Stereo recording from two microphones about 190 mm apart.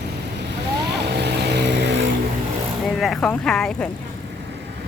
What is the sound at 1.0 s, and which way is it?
Vehicle, 60° right (ahead or behind).